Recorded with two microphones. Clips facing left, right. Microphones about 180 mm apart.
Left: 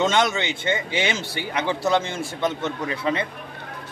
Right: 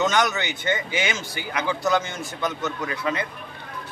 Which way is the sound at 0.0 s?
25° left (ahead or behind).